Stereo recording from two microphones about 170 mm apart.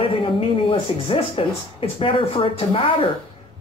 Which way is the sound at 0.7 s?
30° left (ahead or behind).